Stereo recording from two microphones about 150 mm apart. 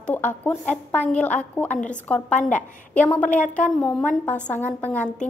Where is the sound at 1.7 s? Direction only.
55° left (ahead or behind).